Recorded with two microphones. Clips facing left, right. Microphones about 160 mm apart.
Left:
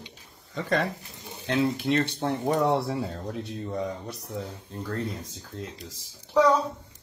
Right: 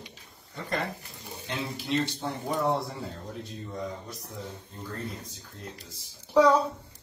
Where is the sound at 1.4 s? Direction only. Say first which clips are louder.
Left 9 dB; 65° left (ahead or behind).